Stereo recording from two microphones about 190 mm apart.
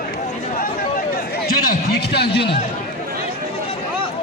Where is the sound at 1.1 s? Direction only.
55° left (ahead or behind).